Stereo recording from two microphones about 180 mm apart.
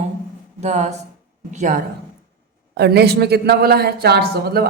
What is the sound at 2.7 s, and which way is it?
Speech, 65° right (ahead or behind).